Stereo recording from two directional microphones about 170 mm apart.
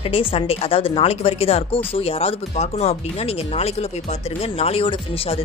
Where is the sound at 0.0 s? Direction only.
35° left (ahead or behind).